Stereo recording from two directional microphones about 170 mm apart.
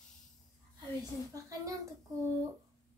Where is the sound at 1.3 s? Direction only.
20° right (ahead or behind).